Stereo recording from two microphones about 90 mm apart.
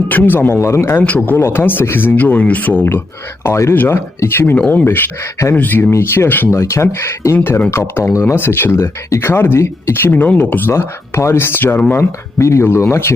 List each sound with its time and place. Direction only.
0.1 s speech: 20° left (ahead or behind)
6.5 s speech: 35° left (ahead or behind); by 10.6 s 20° left (ahead or behind)
10.7 s speech: 30° left (ahead or behind)